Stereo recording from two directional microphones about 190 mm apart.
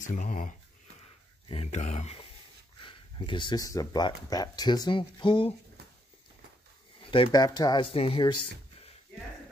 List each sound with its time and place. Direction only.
0.0 s speech: 40° left (ahead or behind); by 5.5 s 25° left (ahead or behind)
7.0 s speech: 25° left (ahead or behind)